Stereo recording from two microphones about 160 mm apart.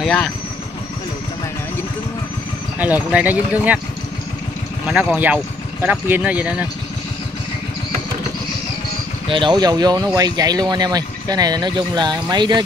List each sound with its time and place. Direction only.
0.0 s speech: 5° left (ahead or behind)
2.8 s speech: 10° right (ahead or behind)
4.8 s speech: 10° right (ahead or behind)
9.3 s speech: 30° right (ahead or behind)